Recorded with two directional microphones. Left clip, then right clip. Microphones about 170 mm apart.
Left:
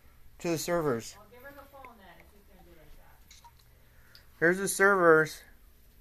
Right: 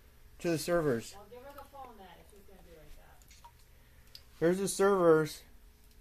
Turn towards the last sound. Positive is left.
turn(degrees=15)  # may be behind; listen again after turning